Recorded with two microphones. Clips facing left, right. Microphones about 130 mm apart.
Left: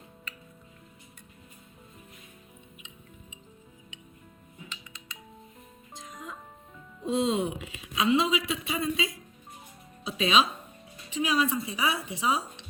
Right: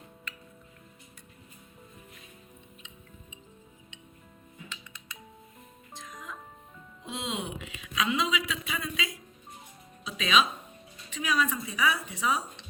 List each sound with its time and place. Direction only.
6.1 s music: 25° left (ahead or behind)
7.0 s speech: 35° left (ahead or behind)
10.0 s music: 35° left (ahead or behind)
11.1 s speech: 25° left (ahead or behind)